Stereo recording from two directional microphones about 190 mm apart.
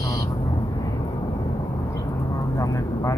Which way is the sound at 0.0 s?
15° left (ahead or behind).